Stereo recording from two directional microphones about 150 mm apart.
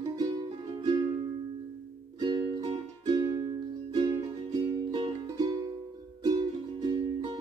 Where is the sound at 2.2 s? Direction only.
30° right (ahead or behind).